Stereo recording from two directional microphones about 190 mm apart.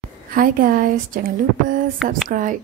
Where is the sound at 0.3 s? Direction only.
50° right (ahead or behind).